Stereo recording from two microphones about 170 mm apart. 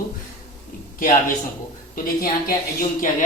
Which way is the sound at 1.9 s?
60° left (ahead or behind).